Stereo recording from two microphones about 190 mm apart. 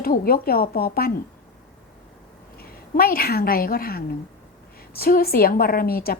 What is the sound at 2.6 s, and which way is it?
A woman's voice, 50° left (ahead or behind).